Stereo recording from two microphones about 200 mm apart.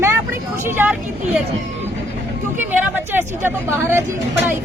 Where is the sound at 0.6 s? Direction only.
10° right (ahead or behind).